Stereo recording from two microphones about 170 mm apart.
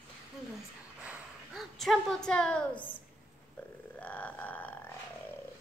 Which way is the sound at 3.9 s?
10° left (ahead or behind).